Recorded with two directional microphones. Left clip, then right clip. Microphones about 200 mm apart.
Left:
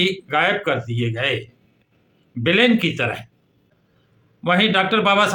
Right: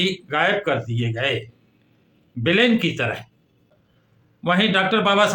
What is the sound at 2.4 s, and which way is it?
Speech, 15° left (ahead or behind).